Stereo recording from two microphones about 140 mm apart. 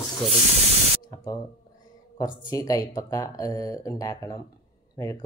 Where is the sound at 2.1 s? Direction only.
25° left (ahead or behind).